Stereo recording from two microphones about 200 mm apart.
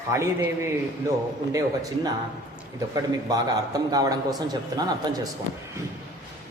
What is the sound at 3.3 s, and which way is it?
A man's voice, 20° right (ahead or behind).